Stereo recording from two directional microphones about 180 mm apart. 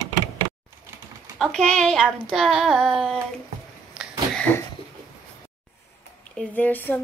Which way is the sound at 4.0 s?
5° left (ahead or behind).